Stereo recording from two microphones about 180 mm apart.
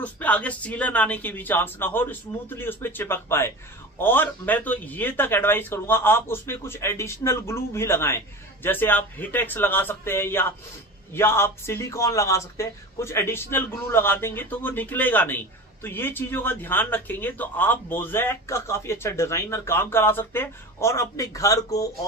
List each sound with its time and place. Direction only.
0.0 s a man's voice: 10° left (ahead or behind)